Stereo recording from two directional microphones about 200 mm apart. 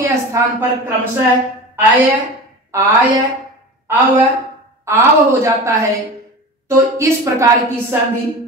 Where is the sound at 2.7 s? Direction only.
15° right (ahead or behind).